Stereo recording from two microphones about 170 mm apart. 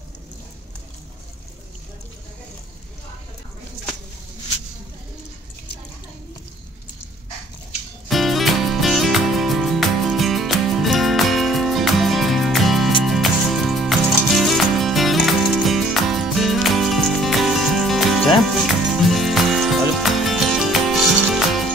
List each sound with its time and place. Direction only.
8.1 s music: centre (ahead or behind)